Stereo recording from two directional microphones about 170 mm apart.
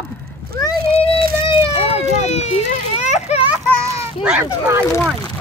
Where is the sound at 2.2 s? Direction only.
40° left (ahead or behind).